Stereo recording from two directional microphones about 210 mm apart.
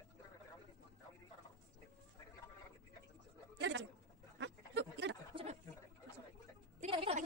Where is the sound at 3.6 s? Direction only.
55° right (ahead or behind).